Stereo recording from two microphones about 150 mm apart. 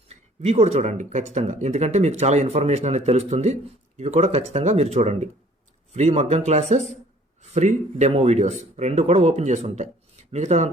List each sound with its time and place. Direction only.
0.1 s speech: 45° right (ahead or behind)